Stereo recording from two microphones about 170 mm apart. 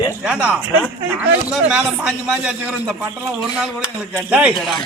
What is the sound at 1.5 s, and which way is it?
Speech, 5° right (ahead or behind).